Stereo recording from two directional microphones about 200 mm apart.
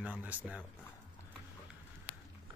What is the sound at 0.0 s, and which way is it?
Speech, 5° right (ahead or behind).